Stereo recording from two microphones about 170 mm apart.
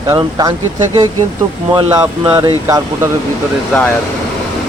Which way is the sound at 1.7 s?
25° right (ahead or behind).